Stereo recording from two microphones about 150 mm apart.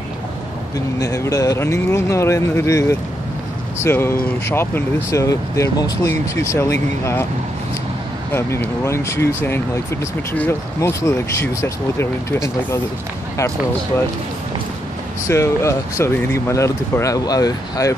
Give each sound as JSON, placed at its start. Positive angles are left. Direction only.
{"t": 0.9, "sound": "speech", "side_deg": 25}
{"t": 8.3, "sound": "speech", "side_deg": 15}
{"t": 15.2, "sound": "speech", "side_deg": 20}